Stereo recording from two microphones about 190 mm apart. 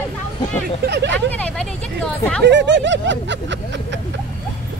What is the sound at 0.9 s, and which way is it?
Snicker, 65° right (ahead or behind).